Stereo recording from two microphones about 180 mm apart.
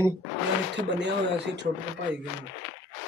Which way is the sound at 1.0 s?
75° right (ahead or behind).